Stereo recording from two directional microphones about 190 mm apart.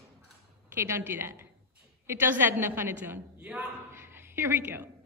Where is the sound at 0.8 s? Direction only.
15° right (ahead or behind).